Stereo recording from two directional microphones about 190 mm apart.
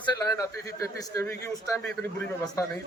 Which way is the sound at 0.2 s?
20° left (ahead or behind).